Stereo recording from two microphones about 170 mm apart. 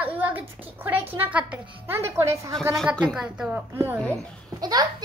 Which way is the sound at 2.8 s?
Centre (ahead or behind).